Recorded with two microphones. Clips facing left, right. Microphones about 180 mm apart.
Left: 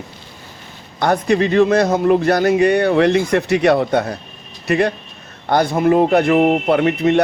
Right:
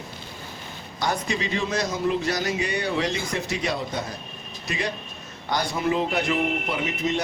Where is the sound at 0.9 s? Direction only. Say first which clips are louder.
Left 11 dB; 60° left (ahead or behind).